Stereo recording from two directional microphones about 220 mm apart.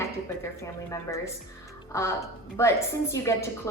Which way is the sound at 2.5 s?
10° left (ahead or behind).